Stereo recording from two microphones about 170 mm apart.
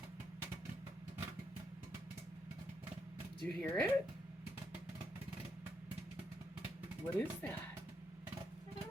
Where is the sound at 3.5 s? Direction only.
5° left (ahead or behind).